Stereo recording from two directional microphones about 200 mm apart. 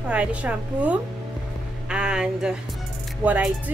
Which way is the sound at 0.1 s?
5° right (ahead or behind).